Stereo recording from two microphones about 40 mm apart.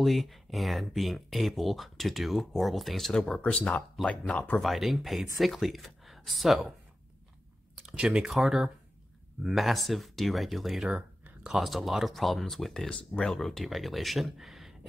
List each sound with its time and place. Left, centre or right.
0.0 s speech: centre
3.1 s speech: centre
3.3 s speech: left
4.6 s speech: centre
7.8 s speech: centre
8.3 s speech: centre